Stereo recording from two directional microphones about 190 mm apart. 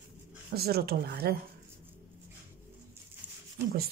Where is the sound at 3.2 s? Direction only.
5° right (ahead or behind).